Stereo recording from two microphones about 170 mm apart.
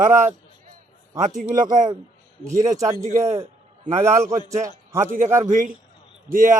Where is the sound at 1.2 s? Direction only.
50° right (ahead or behind).